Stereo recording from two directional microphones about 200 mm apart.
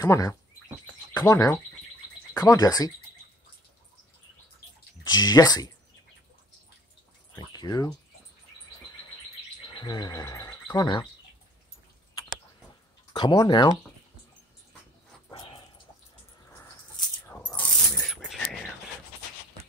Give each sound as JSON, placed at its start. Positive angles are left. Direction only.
{"t": 0.0, "sound": "speech", "side_deg": 15}
{"t": 5.0, "sound": "speech", "side_deg": 20}
{"t": 7.3, "sound": "speech", "side_deg": 20}
{"t": 9.7, "sound": "a sound", "side_deg": 20}
{"t": 13.1, "sound": "speech", "side_deg": 20}
{"t": 15.3, "sound": "dog", "side_deg": 25}
{"t": 17.4, "sound": "coin", "side_deg": 20}
{"t": 18.0, "sound": "coin", "side_deg": 0}